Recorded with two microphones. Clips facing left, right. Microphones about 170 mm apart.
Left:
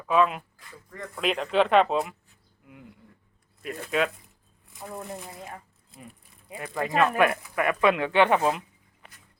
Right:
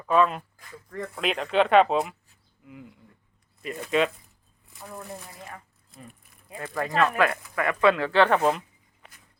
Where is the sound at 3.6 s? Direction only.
Centre (ahead or behind).